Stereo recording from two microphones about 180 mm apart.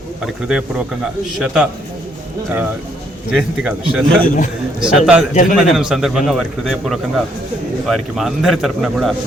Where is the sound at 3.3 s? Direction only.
5° right (ahead or behind).